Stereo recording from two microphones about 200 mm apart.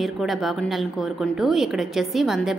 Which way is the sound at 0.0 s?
Centre (ahead or behind).